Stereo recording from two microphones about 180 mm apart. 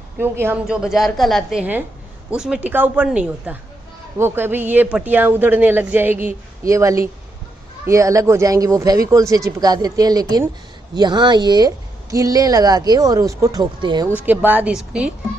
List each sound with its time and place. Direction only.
0.2 s a woman's voice: 10° right (ahead or behind)
14.1 s speech: 10° right (ahead or behind)